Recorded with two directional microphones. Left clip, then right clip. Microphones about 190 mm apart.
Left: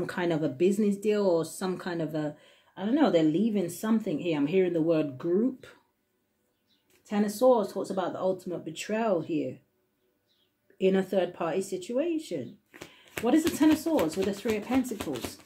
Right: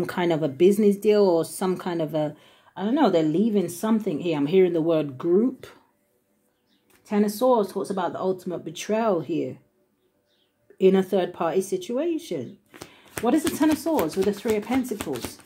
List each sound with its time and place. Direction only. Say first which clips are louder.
0.0 s speech: right 5 dB; 35° right (ahead or behind)
7.1 s speech: right 2 dB; 25° right (ahead or behind)
10.8 s speech: right 6 dB; 35° right (ahead or behind)
13.4 s speech: right 2 dB; 20° right (ahead or behind)